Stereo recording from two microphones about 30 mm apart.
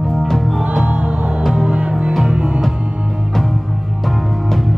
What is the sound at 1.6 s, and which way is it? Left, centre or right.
Music, right.